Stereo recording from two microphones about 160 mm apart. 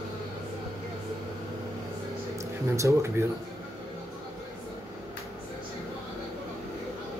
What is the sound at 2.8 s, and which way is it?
Speech, 15° right (ahead or behind).